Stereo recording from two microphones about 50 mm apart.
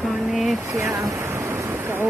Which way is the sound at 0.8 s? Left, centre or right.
Right.